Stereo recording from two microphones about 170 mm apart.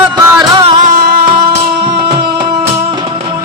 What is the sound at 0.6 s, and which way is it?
Music, 50° right (ahead or behind).